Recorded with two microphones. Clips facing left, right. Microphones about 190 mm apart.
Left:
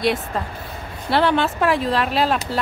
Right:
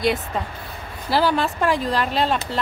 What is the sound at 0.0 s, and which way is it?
Speech, centre (ahead or behind).